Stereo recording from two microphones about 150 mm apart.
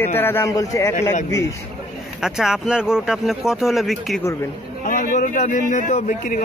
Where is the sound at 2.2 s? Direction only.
5° right (ahead or behind).